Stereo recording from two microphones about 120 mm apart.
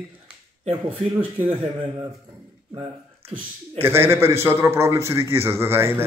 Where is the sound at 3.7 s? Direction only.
20° right (ahead or behind).